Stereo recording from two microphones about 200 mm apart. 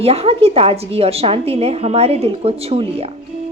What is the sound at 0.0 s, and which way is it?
A woman's voice, 30° right (ahead or behind).